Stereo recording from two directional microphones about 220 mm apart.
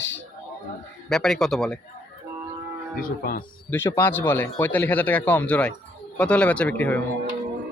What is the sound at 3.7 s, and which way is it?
A man's voice, 10° left (ahead or behind).